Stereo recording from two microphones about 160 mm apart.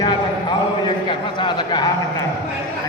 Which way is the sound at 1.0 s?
30° left (ahead or behind).